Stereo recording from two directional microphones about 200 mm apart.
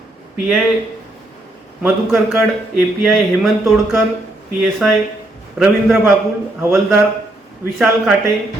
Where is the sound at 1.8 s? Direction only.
5° right (ahead or behind).